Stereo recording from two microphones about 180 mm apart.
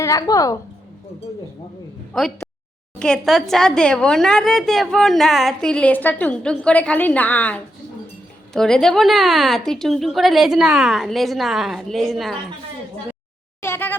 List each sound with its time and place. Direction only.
0.0 s a woman's voice: 20° left (ahead or behind)
2.1 s a woman's voice: 5° left (ahead or behind)
13.6 s a sound: 15° left (ahead or behind)